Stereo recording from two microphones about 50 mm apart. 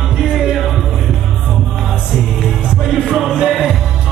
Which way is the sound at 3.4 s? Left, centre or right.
Centre.